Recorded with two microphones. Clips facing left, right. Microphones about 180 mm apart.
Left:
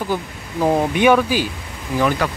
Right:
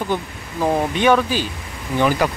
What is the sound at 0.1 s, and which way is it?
Speech, 10° left (ahead or behind).